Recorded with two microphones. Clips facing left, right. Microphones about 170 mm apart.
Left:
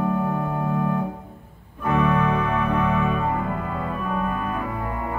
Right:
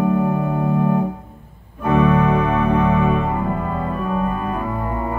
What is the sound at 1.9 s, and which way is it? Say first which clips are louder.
Music: right 5 dB; 25° right (ahead or behind).